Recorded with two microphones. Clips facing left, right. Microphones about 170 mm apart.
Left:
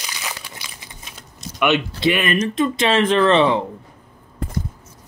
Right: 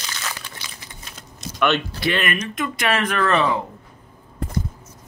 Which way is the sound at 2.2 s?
30° left (ahead or behind).